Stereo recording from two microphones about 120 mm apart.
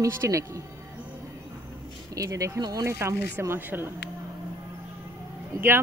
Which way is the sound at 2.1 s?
30° right (ahead or behind).